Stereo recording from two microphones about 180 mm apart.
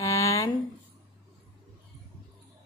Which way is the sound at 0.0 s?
15° left (ahead or behind).